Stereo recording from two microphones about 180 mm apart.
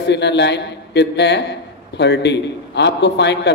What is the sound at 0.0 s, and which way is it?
A man's voice, 75° left (ahead or behind).